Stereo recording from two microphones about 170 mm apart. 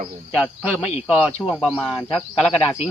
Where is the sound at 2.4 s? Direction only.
10° left (ahead or behind).